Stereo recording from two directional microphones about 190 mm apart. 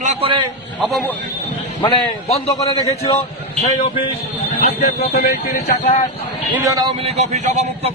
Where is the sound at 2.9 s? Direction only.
35° left (ahead or behind).